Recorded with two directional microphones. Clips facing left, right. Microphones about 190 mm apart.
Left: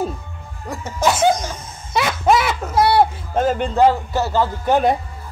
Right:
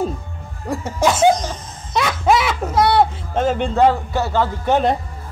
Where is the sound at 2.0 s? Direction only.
Centre (ahead or behind).